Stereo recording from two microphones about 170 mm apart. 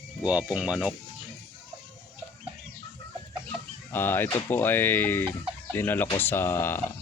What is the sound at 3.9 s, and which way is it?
Speech, 10° left (ahead or behind).